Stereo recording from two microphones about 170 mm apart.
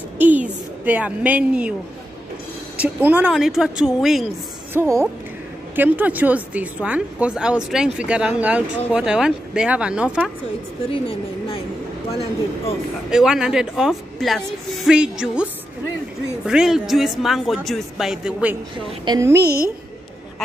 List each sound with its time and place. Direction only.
0.8 s speech: 10° right (ahead or behind)
2.8 s a woman's voice: 10° right (ahead or behind)
4.7 s speech: 15° right (ahead or behind)
10.9 s a woman's voice: 30° left (ahead or behind)
13.1 s a woman's voice: 5° right (ahead or behind)
16.4 s a woman's voice: 5° right (ahead or behind)
19.0 s speech: 15° right (ahead or behind)
19.4 s a woman's voice: 65° right (ahead or behind)